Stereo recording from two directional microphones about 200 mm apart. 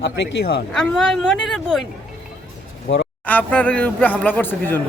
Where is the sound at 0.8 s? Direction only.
Centre (ahead or behind).